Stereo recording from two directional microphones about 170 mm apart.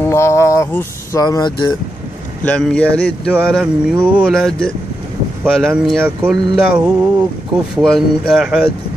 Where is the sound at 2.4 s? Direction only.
5° left (ahead or behind).